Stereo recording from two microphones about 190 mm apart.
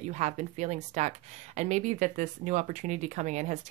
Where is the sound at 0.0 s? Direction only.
40° right (ahead or behind).